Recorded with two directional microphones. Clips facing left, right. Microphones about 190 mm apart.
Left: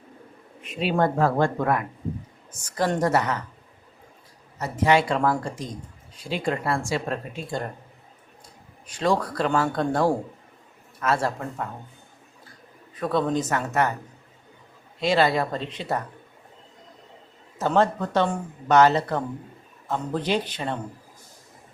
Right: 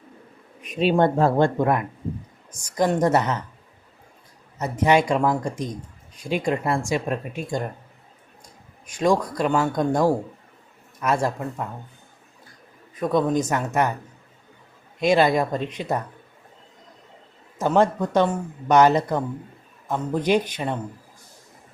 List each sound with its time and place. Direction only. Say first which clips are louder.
0.6 s speech: right 4 dB; 20° right (ahead or behind)
4.5 s speech: right 2 dB; 20° right (ahead or behind)
8.9 s speech: right 3 dB; 10° right (ahead or behind)
13.0 s speech: right 3 dB; 15° right (ahead or behind)
15.0 s speech: right 3 dB; 15° right (ahead or behind)
17.6 s speech: right 2 dB; 15° right (ahead or behind)